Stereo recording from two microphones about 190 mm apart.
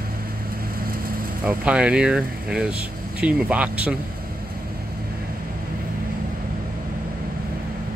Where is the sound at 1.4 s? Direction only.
5° right (ahead or behind).